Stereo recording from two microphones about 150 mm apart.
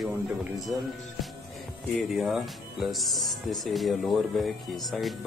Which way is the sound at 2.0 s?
Centre (ahead or behind).